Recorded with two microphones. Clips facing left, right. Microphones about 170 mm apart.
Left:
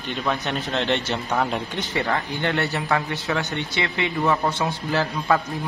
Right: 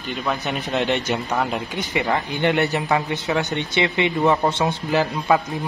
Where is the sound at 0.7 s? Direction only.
15° right (ahead or behind).